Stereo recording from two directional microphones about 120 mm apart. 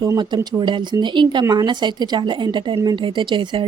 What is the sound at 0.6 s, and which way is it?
Speech, 40° right (ahead or behind).